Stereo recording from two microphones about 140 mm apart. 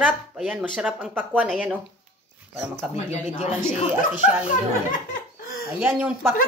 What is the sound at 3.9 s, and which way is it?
Speech, 10° right (ahead or behind).